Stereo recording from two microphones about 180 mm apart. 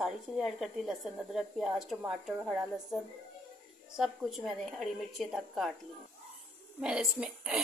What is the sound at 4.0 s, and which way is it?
Speech, centre (ahead or behind).